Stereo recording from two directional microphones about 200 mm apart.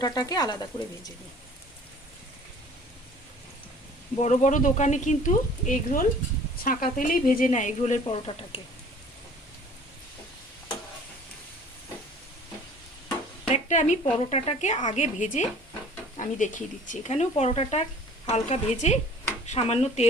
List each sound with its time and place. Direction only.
0.0 s speech: 20° left (ahead or behind)
4.2 s speech: 35° left (ahead or behind)
8.0 s speech: 25° left (ahead or behind)
13.5 s speech: 35° left (ahead or behind)